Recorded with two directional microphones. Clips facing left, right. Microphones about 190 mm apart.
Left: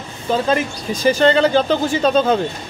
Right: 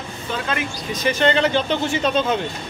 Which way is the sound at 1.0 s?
35° left (ahead or behind).